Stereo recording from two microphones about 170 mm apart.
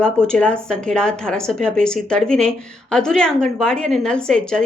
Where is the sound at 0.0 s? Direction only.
5° left (ahead or behind).